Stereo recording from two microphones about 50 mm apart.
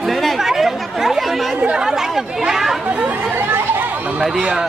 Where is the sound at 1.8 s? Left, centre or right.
Centre.